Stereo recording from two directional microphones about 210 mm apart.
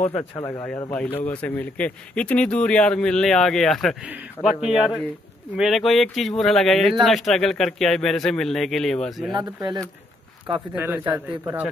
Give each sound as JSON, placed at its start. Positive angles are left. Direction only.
{"t": 0.0, "sound": "speech", "side_deg": 30}
{"t": 0.5, "sound": "a man's voice", "side_deg": 15}
{"t": 9.3, "sound": "speech", "side_deg": -20}
{"t": 10.8, "sound": "a man's voice", "side_deg": -10}